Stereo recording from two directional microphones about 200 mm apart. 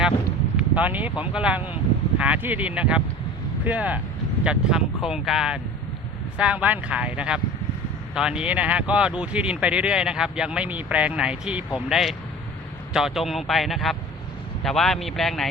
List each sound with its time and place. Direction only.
0.8 s speech: 10° right (ahead or behind)